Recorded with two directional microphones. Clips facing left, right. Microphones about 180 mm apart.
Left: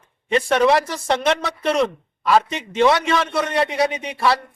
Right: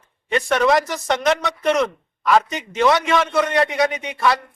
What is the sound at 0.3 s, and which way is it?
A man's voice, 30° left (ahead or behind).